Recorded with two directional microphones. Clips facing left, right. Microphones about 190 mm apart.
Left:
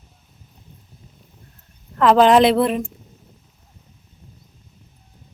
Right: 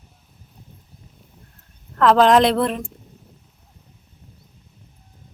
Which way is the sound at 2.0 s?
5° left (ahead or behind).